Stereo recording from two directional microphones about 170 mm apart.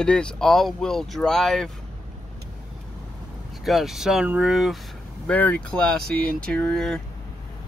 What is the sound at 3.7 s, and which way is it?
Speech, centre (ahead or behind).